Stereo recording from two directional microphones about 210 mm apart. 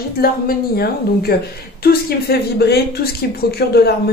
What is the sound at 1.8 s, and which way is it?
Speech, 45° left (ahead or behind).